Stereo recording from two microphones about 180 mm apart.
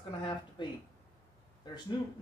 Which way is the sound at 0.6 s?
25° left (ahead or behind).